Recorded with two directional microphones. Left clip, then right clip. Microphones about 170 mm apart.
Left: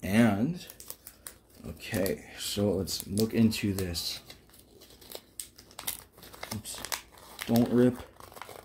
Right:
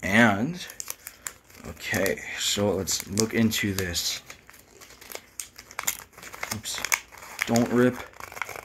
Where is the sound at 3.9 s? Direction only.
15° left (ahead or behind).